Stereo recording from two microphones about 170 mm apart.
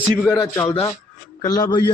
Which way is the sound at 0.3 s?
15° left (ahead or behind).